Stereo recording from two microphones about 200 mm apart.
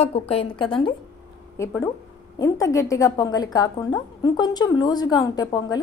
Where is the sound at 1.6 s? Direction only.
15° left (ahead or behind).